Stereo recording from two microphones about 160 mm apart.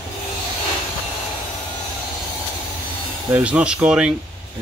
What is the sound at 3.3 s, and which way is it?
Speech, 10° right (ahead or behind).